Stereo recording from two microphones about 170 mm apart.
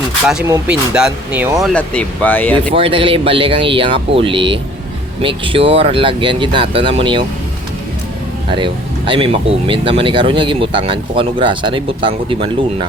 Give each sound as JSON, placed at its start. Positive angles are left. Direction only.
{"t": 0.7, "sound": "speech", "side_deg": -5}
{"t": 2.7, "sound": "speech", "side_deg": -30}
{"t": 8.4, "sound": "speech", "side_deg": -30}